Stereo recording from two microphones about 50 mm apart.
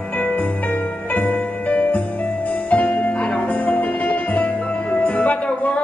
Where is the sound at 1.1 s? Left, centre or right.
Left.